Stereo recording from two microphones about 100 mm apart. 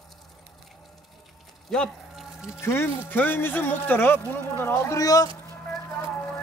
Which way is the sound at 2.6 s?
25° left (ahead or behind).